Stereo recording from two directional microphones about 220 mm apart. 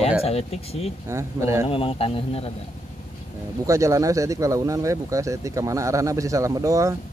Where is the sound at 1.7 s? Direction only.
25° left (ahead or behind).